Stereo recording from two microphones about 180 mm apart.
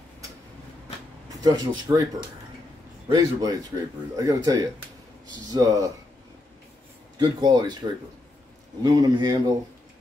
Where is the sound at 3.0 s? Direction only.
20° right (ahead or behind).